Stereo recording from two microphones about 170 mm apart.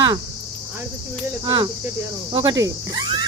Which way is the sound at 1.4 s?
25° right (ahead or behind).